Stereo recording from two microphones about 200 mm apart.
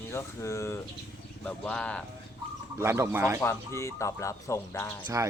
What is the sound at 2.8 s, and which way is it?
Speech, 15° right (ahead or behind).